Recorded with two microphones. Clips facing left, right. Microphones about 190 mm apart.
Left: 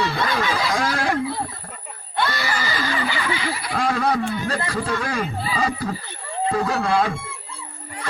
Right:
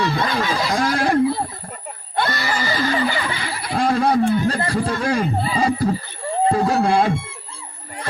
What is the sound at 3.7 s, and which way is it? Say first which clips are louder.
Wild animals: right 4 dB; 35° right (ahead or behind).